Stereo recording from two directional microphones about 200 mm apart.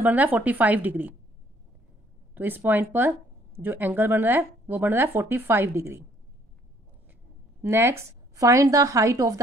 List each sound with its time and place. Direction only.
0.0 s speech: 10° right (ahead or behind)
2.3 s speech: 10° right (ahead or behind)
7.6 s speech: 10° right (ahead or behind)